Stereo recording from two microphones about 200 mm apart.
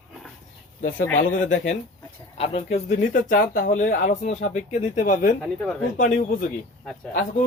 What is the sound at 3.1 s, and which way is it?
Speech, 50° left (ahead or behind).